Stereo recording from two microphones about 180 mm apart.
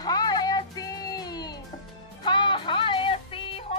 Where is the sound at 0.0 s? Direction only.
20° left (ahead or behind).